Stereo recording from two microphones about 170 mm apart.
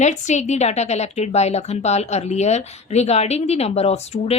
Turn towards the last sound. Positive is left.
turn(degrees=40)  # may be behind; listen again after turning